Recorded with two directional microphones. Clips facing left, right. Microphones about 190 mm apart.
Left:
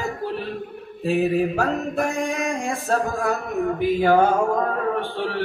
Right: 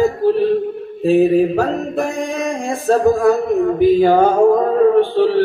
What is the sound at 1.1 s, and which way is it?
Mantra, 30° right (ahead or behind).